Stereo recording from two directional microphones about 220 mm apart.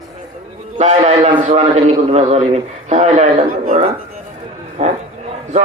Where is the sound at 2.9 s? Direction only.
30° right (ahead or behind).